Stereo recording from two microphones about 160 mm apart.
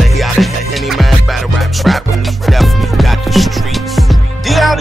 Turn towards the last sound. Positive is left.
turn(degrees=0)  # may be behind; listen again after turning